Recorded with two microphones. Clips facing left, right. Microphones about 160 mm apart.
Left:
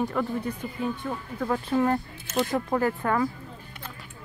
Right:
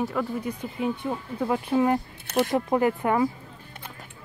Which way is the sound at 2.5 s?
20° right (ahead or behind).